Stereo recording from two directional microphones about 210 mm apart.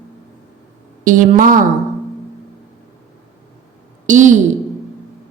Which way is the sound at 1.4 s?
40° right (ahead or behind).